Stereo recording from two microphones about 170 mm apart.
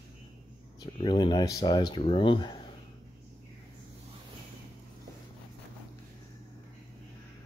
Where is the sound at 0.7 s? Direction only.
25° left (ahead or behind).